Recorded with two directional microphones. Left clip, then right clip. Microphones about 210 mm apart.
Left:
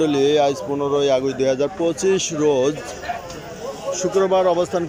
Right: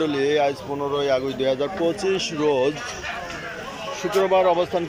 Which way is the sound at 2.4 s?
15° left (ahead or behind).